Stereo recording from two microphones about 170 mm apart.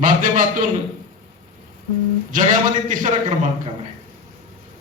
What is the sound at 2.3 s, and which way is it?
Speech, 50° right (ahead or behind).